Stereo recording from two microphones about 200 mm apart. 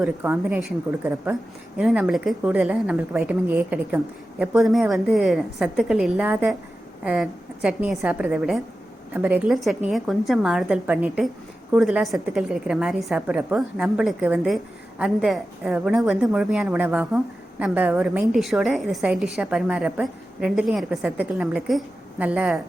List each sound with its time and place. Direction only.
0.0 s a woman's voice: 10° right (ahead or behind)